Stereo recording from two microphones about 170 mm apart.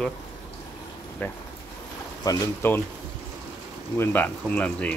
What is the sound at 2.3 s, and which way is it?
Speech, 15° left (ahead or behind).